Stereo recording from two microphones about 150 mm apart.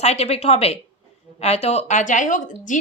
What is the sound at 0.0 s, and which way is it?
A woman's voice, 45° left (ahead or behind).